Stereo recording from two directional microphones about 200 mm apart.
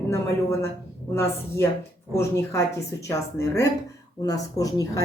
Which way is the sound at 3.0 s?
15° left (ahead or behind).